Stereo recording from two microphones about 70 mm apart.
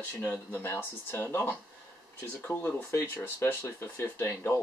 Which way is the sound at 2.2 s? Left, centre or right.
Left.